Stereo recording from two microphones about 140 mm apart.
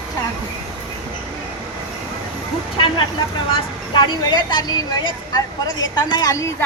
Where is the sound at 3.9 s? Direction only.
30° left (ahead or behind).